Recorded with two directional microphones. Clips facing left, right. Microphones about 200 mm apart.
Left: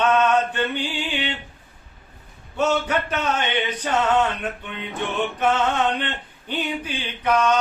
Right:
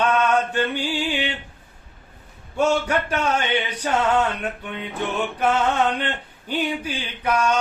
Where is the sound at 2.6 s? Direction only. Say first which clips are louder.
Right 1 dB; 10° right (ahead or behind).